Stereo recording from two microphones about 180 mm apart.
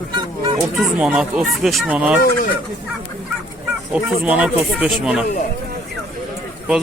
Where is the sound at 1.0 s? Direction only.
5° right (ahead or behind).